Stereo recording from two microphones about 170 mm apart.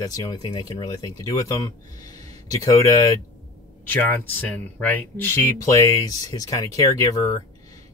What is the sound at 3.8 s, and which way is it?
Speech, 10° left (ahead or behind).